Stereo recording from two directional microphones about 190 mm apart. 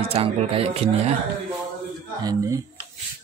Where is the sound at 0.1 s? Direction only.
30° right (ahead or behind).